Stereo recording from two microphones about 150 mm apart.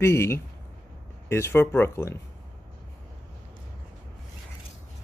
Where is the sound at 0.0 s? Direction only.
15° left (ahead or behind).